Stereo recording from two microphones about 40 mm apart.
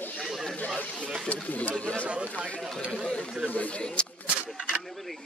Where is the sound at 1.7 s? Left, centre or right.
Left.